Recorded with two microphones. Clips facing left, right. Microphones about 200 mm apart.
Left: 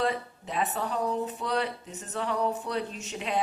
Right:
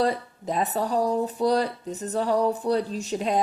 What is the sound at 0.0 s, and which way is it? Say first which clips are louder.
Speech: right 5 dB; 40° right (ahead or behind).